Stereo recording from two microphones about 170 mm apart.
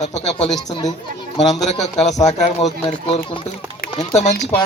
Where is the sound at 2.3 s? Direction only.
45° left (ahead or behind).